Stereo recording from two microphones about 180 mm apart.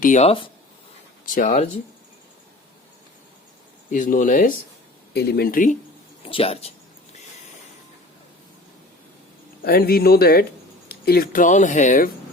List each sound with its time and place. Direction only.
0.0 s speech: 40° left (ahead or behind)
1.2 s speech: 50° left (ahead or behind)
3.9 s speech: 45° left (ahead or behind)
5.1 s speech: 60° left (ahead or behind)
6.2 s a sound: 30° left (ahead or behind)
9.6 s speech: 55° left (ahead or behind)